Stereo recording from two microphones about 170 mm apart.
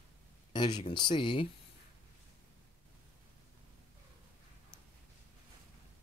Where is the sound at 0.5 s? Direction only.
25° left (ahead or behind).